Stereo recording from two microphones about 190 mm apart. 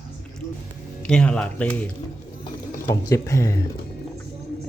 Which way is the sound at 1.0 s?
5° left (ahead or behind).